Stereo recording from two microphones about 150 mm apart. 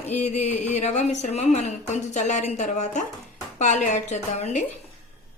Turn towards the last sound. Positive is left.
turn(degrees=50)  # may be behind; listen again after turning